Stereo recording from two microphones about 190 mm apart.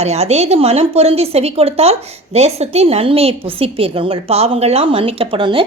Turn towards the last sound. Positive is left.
turn(degrees=-25)  # may be behind; listen again after turning